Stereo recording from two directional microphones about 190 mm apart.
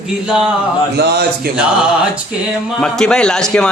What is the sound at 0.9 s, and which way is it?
Speech, 60° right (ahead or behind).